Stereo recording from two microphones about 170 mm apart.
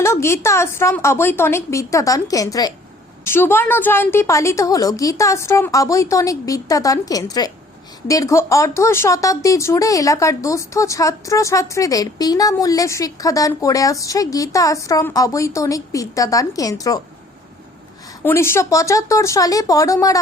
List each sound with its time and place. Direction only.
0.0 s a woman's voice: 15° left (ahead or behind)
18.2 s speech: 15° left (ahead or behind)